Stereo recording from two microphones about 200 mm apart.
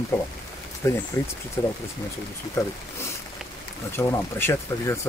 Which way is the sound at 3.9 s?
10° left (ahead or behind).